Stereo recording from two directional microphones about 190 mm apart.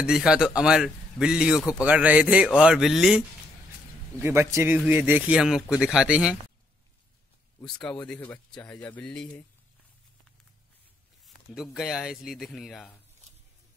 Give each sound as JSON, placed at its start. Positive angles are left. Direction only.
{"t": 0.0, "sound": "a man's voice", "side_deg": -5}
{"t": 4.2, "sound": "speech", "side_deg": -15}
{"t": 7.6, "sound": "a man's voice", "side_deg": 5}
{"t": 11.2, "sound": "a man's voice", "side_deg": 0}